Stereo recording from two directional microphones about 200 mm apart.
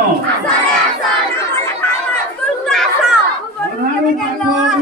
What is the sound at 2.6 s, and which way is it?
Chatter, 5° left (ahead or behind).